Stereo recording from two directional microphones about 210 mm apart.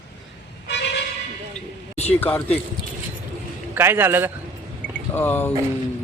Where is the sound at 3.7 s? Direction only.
10° right (ahead or behind).